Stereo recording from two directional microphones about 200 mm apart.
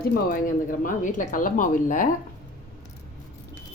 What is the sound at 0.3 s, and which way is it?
Speech, 45° left (ahead or behind).